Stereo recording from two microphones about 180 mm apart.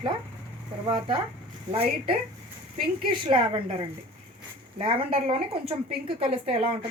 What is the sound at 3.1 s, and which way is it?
A woman's voice, 25° right (ahead or behind).